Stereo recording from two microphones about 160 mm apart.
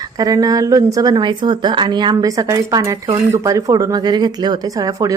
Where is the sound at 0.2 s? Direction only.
25° right (ahead or behind).